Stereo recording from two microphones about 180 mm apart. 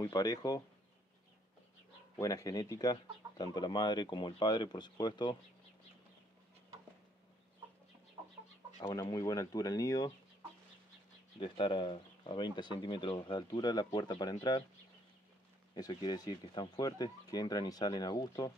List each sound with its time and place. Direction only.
0.0 s speech: 20° left (ahead or behind)
2.1 s speech: 20° left (ahead or behind)
8.9 s speech: 20° left (ahead or behind)
11.3 s speech: 30° left (ahead or behind)
15.7 s speech: 25° left (ahead or behind)